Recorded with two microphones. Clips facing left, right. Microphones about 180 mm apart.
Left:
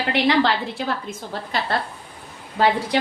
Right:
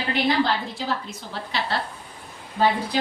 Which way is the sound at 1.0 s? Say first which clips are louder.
Left 4 dB; 50° left (ahead or behind).